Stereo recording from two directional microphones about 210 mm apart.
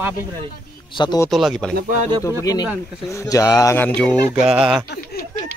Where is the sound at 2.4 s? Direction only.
15° left (ahead or behind).